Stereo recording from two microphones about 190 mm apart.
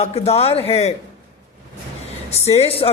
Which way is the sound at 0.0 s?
35° left (ahead or behind).